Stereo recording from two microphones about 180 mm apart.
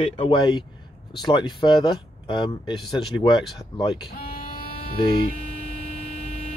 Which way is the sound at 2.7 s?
Centre (ahead or behind).